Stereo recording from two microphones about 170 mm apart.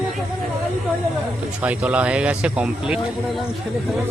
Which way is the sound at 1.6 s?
10° right (ahead or behind).